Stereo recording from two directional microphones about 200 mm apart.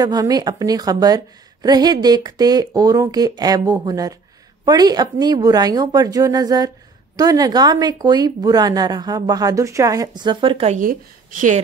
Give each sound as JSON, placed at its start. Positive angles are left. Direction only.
{"t": 0.0, "sound": "speech", "side_deg": -20}